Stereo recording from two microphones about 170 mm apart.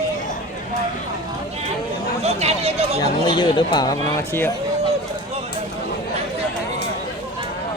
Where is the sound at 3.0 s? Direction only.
25° left (ahead or behind).